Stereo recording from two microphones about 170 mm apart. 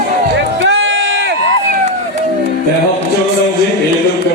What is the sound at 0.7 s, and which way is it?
Run, 90° right.